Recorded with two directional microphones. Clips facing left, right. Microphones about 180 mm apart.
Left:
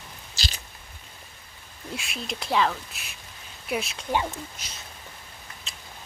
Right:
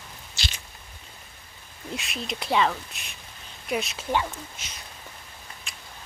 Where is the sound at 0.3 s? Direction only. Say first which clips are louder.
Left 1 dB; 35° left (ahead or behind).